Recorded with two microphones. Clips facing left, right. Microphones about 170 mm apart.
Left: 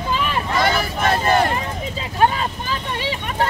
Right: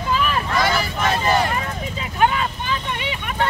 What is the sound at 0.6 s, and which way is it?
Vehicle, 50° left (ahead or behind).